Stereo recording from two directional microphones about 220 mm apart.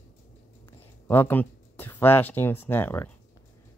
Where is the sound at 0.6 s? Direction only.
10° left (ahead or behind).